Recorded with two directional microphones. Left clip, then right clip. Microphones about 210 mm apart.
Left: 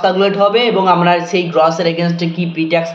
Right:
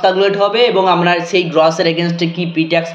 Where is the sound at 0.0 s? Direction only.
50° right (ahead or behind).